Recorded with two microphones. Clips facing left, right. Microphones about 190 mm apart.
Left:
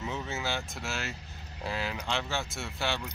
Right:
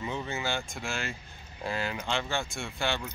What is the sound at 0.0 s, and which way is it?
Speech, centre (ahead or behind).